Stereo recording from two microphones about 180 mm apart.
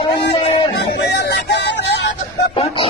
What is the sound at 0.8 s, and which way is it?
Music, 70° left (ahead or behind).